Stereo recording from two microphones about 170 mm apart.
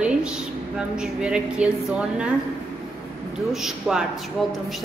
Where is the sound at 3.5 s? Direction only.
Centre (ahead or behind).